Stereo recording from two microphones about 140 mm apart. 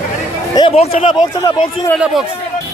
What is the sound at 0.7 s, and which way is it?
Speech, 45° left (ahead or behind).